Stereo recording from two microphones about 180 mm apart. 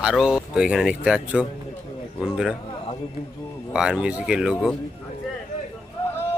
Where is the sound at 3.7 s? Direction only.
5° right (ahead or behind).